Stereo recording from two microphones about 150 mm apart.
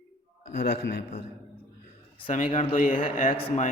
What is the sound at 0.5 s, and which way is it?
Speech, 90° left.